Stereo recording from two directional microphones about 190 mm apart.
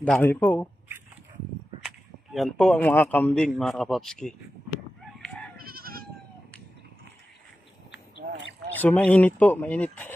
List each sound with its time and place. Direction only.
0.0 s speech: 10° left (ahead or behind)
2.3 s a man's voice: centre (ahead or behind)
5.6 s goat: 50° right (ahead or behind)
8.7 s speech: 10° left (ahead or behind)